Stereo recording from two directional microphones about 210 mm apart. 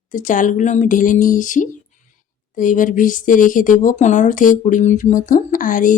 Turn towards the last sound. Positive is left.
turn(degrees=40)  # may be behind; listen again after turning